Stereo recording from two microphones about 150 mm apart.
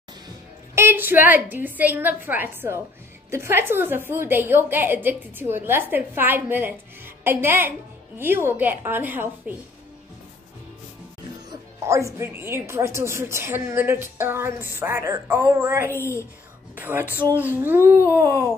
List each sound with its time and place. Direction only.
0.7 s a woman's voice: 15° right (ahead or behind)
11.8 s a woman's voice: 20° right (ahead or behind)
15.9 s a woman's voice: 15° left (ahead or behind)
16.7 s a woman's voice: 10° right (ahead or behind)